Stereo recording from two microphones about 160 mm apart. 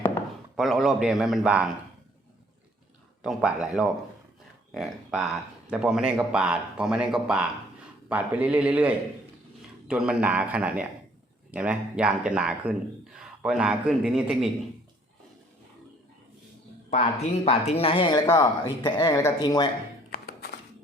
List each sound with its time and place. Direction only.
0.5 s speech: centre (ahead or behind)
3.2 s a man's voice: 5° right (ahead or behind)
16.9 s speech: 40° left (ahead or behind); by 19.7 s 25° left (ahead or behind)
20.1 s music: 70° left (ahead or behind)